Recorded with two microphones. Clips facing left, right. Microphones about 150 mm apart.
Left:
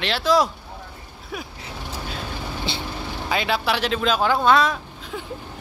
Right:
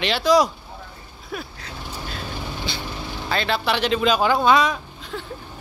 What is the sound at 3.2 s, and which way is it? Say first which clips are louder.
Speech: even; 10° left (ahead or behind).